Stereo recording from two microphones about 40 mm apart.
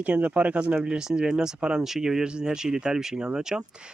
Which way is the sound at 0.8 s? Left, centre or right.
Centre.